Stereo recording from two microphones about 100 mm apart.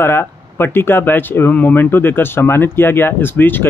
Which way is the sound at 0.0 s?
25° left (ahead or behind).